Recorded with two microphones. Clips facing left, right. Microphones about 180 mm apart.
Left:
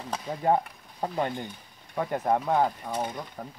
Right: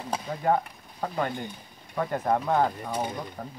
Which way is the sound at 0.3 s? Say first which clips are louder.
Even; 25° left (ahead or behind).